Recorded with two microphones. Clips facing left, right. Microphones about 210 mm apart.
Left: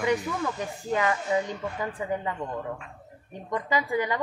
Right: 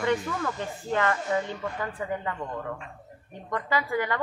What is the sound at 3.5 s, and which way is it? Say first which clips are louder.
Speech: left 1 dB; 20° left (ahead or behind).